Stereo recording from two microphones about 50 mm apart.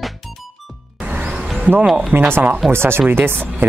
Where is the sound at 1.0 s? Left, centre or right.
Right.